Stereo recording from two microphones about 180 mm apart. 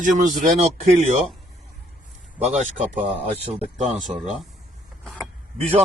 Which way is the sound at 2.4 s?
40° right (ahead or behind).